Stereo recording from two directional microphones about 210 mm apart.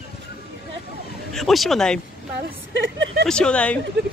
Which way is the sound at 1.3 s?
Centre (ahead or behind).